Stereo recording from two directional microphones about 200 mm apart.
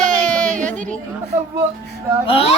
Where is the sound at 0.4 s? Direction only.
40° right (ahead or behind).